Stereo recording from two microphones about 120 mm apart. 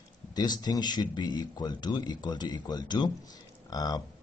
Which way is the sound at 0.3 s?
35° left (ahead or behind).